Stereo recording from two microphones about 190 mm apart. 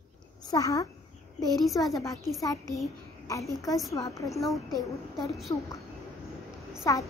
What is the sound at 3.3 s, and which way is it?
A child's voice, 15° left (ahead or behind).